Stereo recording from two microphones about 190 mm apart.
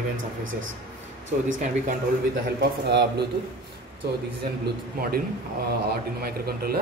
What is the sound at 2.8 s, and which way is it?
Speech, 60° right (ahead or behind).